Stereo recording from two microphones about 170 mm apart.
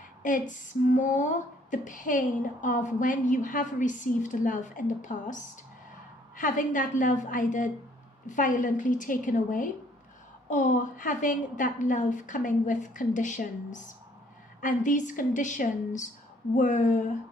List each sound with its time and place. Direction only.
0.2 s music: 50° left (ahead or behind)
0.9 s a woman's voice: 45° left (ahead or behind)